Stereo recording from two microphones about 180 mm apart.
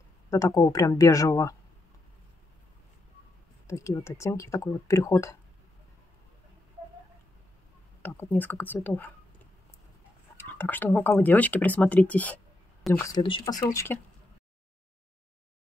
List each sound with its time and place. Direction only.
0.3 s speech: 20° left (ahead or behind)
3.6 s speech: 15° left (ahead or behind)
8.0 s speech: 10° left (ahead or behind)
10.3 s speech: 10° left (ahead or behind)
13.0 s speech: 25° left (ahead or behind)